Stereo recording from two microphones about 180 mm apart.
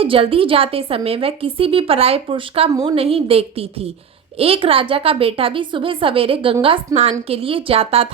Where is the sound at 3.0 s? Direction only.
30° right (ahead or behind).